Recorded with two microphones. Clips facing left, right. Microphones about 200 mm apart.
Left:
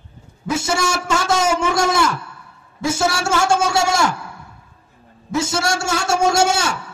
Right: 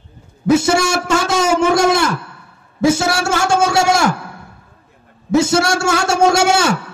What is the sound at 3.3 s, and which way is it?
Speech, 55° right (ahead or behind).